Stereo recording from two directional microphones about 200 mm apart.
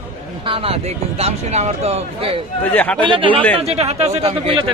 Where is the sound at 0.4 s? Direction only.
25° right (ahead or behind).